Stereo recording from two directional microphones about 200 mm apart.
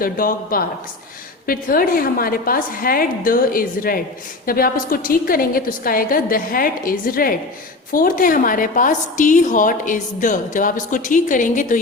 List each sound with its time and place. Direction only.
0.0 s a woman's voice: 45° left (ahead or behind)